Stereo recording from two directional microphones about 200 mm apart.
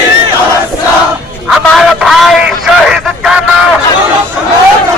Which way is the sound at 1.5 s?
Centre (ahead or behind).